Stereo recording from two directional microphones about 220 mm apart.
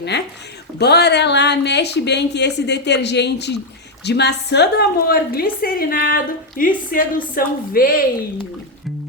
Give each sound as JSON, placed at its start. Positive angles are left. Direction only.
{"t": 0.8, "sound": "a woman's voice", "side_deg": 50}